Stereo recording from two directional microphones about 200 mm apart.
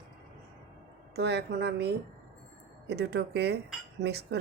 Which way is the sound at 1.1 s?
55° right (ahead or behind).